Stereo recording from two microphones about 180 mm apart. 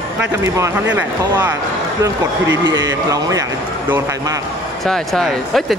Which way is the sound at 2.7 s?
20° right (ahead or behind).